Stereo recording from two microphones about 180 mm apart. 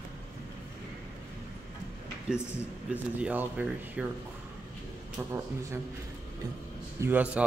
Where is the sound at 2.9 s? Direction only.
10° right (ahead or behind).